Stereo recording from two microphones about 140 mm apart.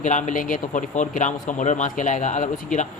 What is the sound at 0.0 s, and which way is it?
Speech, 60° left (ahead or behind).